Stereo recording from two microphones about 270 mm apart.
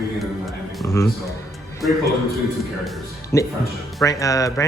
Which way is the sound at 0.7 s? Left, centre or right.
Centre.